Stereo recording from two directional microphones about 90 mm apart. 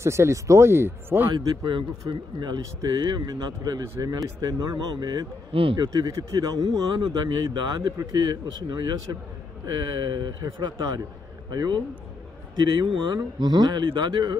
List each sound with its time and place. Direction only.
0.0 s speech: 30° right (ahead or behind)
1.3 s a man's voice: 50° right (ahead or behind)
5.5 s speech: 80° right
5.8 s a man's voice: 45° right (ahead or behind)